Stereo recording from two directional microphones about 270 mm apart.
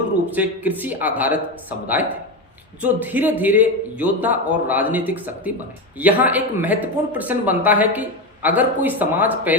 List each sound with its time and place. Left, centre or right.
0.3 s speech: centre
2.8 s speech: centre